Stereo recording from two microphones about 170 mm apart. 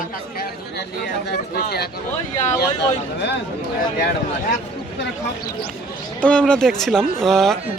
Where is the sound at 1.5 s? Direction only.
65° left (ahead or behind).